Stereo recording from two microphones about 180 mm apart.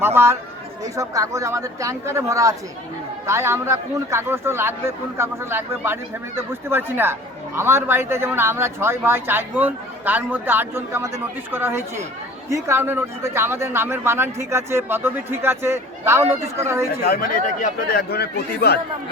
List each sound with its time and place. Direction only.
0.0 s a man's voice: 15° right (ahead or behind)
17.0 s speech: 60° left (ahead or behind)